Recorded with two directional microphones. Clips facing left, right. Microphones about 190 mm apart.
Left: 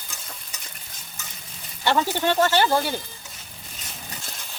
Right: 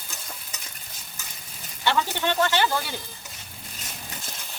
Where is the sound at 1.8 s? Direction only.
45° left (ahead or behind).